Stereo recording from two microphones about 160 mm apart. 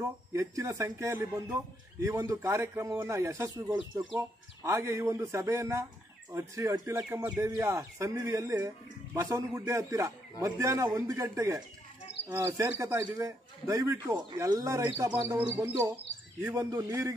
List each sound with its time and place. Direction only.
0.0 s speech: 15° right (ahead or behind)